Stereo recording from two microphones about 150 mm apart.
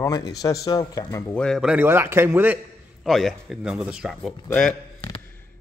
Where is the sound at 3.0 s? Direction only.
Centre (ahead or behind).